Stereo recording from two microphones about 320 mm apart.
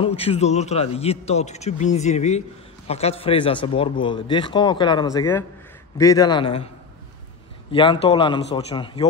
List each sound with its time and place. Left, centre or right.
0.0 s a man's voice: centre
7.7 s a man's voice: centre